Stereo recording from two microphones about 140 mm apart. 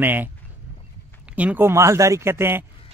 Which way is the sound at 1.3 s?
10° right (ahead or behind).